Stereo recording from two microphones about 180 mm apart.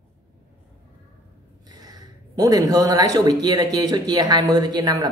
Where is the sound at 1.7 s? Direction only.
20° right (ahead or behind).